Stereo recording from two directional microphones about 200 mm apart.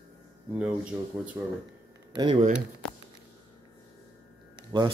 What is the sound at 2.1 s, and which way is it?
Speech, 20° right (ahead or behind).